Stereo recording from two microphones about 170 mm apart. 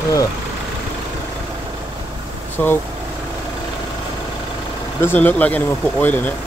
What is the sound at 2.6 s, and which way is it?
Speech, 10° left (ahead or behind).